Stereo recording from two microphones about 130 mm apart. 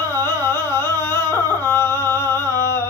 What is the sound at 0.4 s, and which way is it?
Carnatic music, 20° left (ahead or behind).